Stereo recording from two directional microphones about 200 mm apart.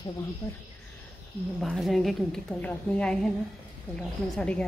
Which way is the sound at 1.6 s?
Centre (ahead or behind).